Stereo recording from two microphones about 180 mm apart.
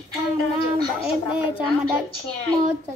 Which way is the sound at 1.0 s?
30° left (ahead or behind).